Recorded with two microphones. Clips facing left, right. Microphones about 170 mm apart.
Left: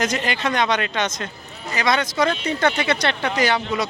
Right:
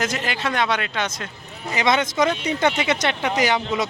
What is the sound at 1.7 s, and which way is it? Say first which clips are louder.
Speech: right 1 dB; 20° right (ahead or behind).